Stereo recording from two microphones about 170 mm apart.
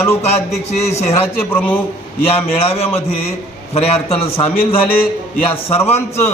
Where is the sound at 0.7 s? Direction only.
40° left (ahead or behind).